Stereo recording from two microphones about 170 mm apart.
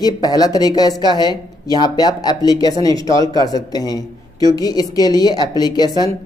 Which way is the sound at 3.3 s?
20° left (ahead or behind).